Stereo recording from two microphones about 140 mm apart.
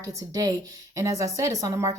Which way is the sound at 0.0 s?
25° right (ahead or behind).